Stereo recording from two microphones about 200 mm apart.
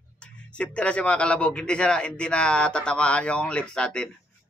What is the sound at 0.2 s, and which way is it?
A man's voice, 5° left (ahead or behind).